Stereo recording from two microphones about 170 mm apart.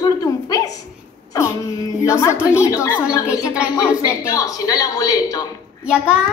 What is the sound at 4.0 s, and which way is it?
A woman's voice, 20° left (ahead or behind).